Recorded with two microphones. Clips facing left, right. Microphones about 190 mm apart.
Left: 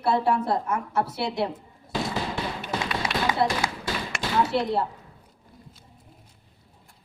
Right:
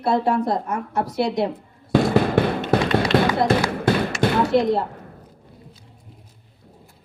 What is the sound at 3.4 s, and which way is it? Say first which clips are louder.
Basketball bounce: right 6 dB; 60° right (ahead or behind).